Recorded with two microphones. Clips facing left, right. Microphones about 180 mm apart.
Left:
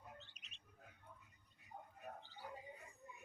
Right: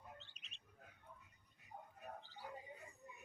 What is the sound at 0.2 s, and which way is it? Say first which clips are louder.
Bird: left 1 dB; 30° right (ahead or behind).